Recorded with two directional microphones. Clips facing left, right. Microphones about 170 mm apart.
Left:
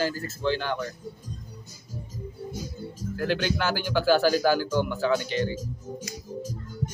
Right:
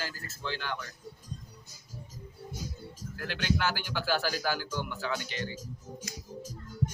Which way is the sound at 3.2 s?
35° left (ahead or behind).